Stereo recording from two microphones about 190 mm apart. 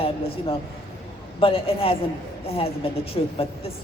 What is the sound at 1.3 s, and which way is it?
A man's voice, 30° left (ahead or behind).